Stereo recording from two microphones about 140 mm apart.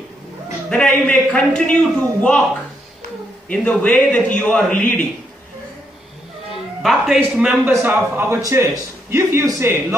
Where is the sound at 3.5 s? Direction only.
10° left (ahead or behind).